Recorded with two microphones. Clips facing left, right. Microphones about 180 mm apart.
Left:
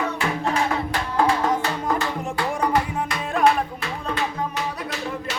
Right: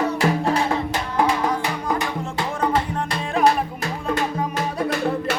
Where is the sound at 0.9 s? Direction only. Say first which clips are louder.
Even; 20° right (ahead or behind).